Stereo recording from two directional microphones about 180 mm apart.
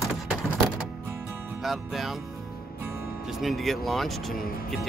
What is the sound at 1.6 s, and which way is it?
Speech, centre (ahead or behind).